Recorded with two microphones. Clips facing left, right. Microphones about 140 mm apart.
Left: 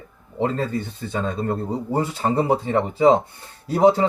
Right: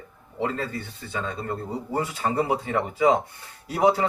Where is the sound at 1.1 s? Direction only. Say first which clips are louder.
Left 5 dB; 35° left (ahead or behind).